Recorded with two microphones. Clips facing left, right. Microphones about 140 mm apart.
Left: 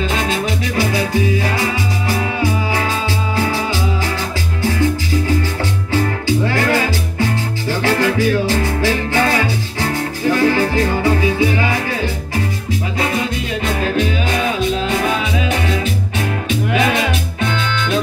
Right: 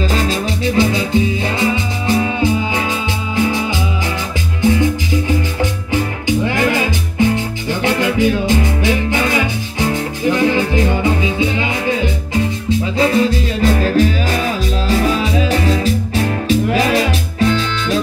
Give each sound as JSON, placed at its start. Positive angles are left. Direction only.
{"t": 0.1, "sound": "salsa music", "side_deg": -30}
{"t": 4.6, "sound": "music", "side_deg": -20}